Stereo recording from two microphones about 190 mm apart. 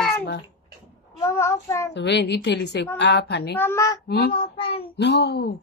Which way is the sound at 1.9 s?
65° left (ahead or behind).